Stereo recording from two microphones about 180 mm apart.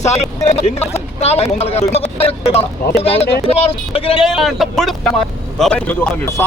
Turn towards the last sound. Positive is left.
turn(degrees=10)  # may be behind; listen again after turning